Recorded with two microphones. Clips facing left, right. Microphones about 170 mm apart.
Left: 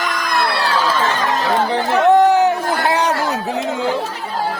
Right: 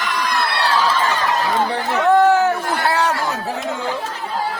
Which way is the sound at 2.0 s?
20° left (ahead or behind).